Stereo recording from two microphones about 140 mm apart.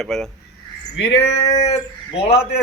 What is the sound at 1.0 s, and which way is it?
Speech, 45° left (ahead or behind).